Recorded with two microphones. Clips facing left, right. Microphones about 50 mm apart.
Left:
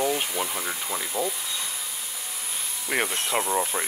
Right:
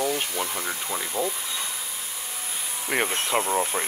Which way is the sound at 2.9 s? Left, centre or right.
Centre.